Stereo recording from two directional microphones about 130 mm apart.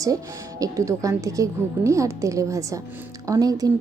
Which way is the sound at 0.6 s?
25° right (ahead or behind).